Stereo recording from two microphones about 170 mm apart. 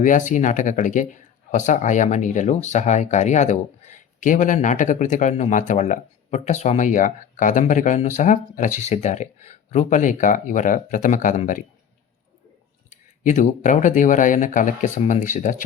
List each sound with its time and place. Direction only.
0.0 s speech: 50° left (ahead or behind)
12.9 s speech: 45° left (ahead or behind)